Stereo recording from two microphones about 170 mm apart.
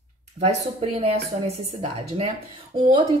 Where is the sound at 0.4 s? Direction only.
40° right (ahead or behind).